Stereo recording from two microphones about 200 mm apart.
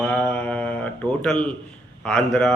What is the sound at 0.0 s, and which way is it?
Mantra, 5° left (ahead or behind).